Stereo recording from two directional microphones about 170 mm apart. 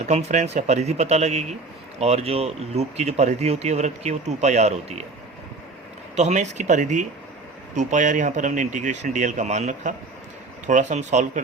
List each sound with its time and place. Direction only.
0.0 s speech: 40° right (ahead or behind)
6.1 s speech: 40° right (ahead or behind)